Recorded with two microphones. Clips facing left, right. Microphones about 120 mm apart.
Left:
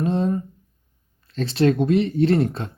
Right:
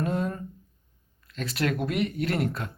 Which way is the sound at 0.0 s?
25° left (ahead or behind).